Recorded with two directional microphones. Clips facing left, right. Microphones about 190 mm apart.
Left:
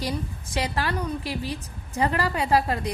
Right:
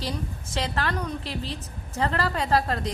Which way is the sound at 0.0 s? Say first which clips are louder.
Left 2 dB; 10° left (ahead or behind).